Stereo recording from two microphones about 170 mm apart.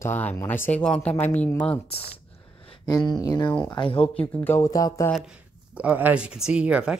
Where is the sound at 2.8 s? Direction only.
20° left (ahead or behind).